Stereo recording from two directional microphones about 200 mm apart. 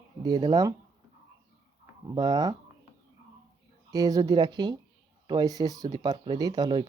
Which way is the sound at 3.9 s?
20° right (ahead or behind).